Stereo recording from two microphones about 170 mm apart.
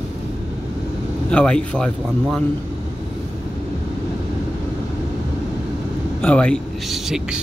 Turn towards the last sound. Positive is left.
turn(degrees=0)  # may be behind; listen again after turning